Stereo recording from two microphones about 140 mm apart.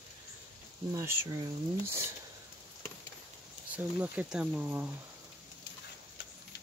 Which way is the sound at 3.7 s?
10° right (ahead or behind).